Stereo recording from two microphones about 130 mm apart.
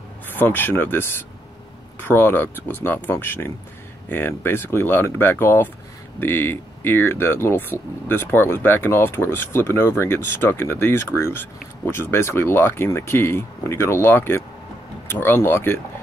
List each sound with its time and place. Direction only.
0.3 s speech: 15° left (ahead or behind)